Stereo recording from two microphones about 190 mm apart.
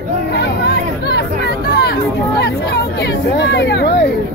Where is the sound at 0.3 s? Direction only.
60° left (ahead or behind).